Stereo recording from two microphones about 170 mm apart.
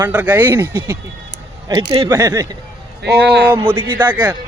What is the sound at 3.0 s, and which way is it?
Speech, 75° right (ahead or behind).